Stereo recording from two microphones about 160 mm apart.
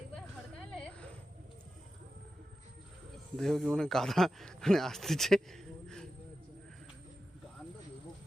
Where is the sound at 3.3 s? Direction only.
Centre (ahead or behind).